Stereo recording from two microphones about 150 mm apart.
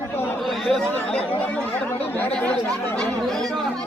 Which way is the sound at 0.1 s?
15° left (ahead or behind).